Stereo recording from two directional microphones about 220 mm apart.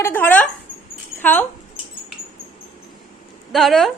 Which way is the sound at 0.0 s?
10° left (ahead or behind).